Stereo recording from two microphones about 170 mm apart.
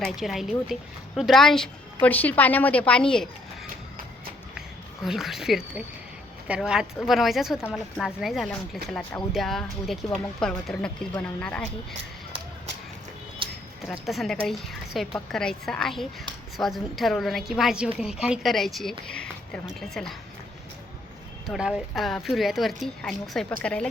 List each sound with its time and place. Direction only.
0.0 s a woman's voice: centre (ahead or behind)
5.0 s a woman's voice: centre (ahead or behind)
13.4 s a sound: 30° right (ahead or behind)
13.8 s speech: centre (ahead or behind)
21.4 s a woman's voice: centre (ahead or behind)